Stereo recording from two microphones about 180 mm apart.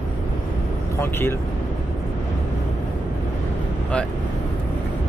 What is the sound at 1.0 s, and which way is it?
Speech, 15° left (ahead or behind).